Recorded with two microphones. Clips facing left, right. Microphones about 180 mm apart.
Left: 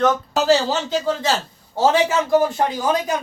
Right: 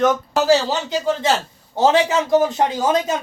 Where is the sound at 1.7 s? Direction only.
20° right (ahead or behind).